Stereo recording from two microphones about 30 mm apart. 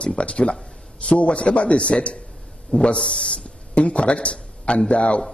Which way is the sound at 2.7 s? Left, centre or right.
Left.